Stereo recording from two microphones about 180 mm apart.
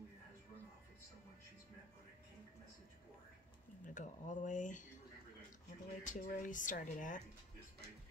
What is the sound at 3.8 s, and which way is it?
Speech, 45° left (ahead or behind).